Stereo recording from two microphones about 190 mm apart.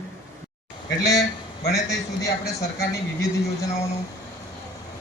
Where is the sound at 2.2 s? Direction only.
15° left (ahead or behind).